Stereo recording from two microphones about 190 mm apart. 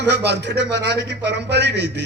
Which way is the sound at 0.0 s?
65° right (ahead or behind).